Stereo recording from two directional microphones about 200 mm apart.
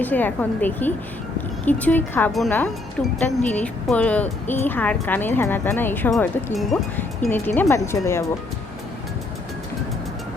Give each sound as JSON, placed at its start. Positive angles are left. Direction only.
{"t": 0.0, "sound": "speech", "side_deg": 10}